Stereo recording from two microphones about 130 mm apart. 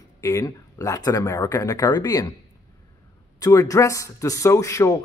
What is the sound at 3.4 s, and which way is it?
Speech, 25° left (ahead or behind).